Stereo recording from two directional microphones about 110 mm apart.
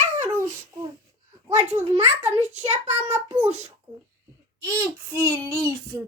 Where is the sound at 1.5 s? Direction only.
90° right.